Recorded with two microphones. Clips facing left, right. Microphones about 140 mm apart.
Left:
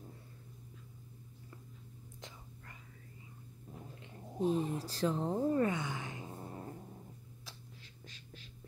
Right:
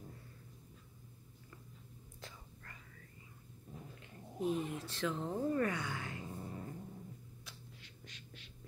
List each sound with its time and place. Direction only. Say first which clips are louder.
4.0 s speech: left 4 dB; 35° left (ahead or behind)